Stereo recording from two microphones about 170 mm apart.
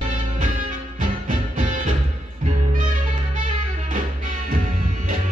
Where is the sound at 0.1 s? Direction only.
50° right (ahead or behind).